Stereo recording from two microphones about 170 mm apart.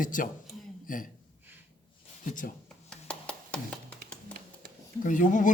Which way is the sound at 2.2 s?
50° left (ahead or behind).